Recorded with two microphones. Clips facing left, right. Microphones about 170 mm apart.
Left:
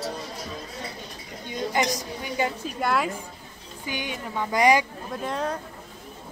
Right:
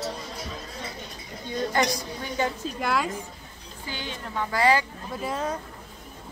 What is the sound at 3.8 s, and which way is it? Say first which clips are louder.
Speech: left 3 dB; 15° left (ahead or behind).